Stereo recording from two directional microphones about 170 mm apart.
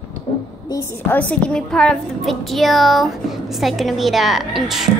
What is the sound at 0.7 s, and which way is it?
A woman's voice, 15° left (ahead or behind).